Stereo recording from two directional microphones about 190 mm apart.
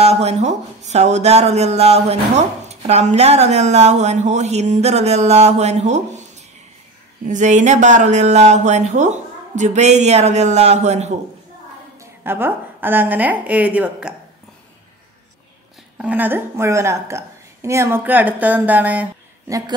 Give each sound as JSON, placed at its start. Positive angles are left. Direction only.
{"t": 0.0, "sound": "speech", "side_deg": -35}
{"t": 7.2, "sound": "speech", "side_deg": -40}
{"t": 12.0, "sound": "a woman's voice", "side_deg": -10}
{"t": 16.0, "sound": "a woman's voice", "side_deg": -10}